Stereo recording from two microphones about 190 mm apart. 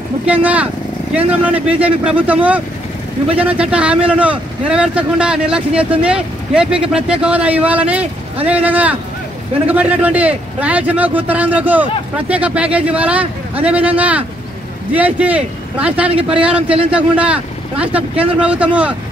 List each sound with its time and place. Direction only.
0.2 s a man's voice: 5° right (ahead or behind)